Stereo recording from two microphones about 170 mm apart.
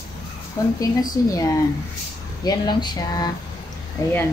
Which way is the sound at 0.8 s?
20° left (ahead or behind).